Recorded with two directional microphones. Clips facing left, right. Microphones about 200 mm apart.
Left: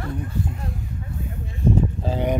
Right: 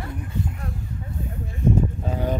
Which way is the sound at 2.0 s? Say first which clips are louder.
Left 3 dB; 30° left (ahead or behind).